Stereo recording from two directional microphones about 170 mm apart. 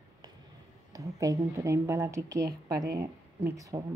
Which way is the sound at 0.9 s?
20° right (ahead or behind).